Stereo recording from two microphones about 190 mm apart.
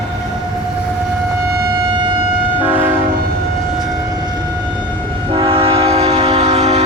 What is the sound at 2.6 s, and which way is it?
Train, 10° right (ahead or behind).